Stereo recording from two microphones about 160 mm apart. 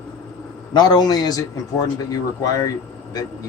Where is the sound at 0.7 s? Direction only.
25° left (ahead or behind).